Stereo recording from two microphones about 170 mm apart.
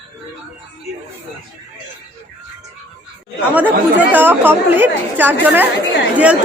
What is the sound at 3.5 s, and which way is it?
Speech, 10° right (ahead or behind).